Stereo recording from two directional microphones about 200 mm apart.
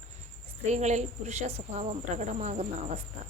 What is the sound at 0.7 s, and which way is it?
Speech, 35° right (ahead or behind).